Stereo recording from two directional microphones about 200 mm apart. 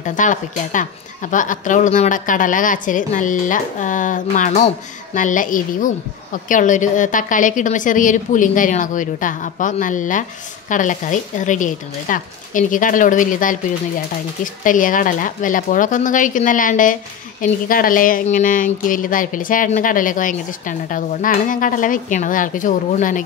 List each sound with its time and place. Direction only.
0.0 s a woman's voice: 40° left (ahead or behind)